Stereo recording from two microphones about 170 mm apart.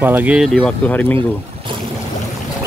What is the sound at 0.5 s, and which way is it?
Speech, 5° left (ahead or behind).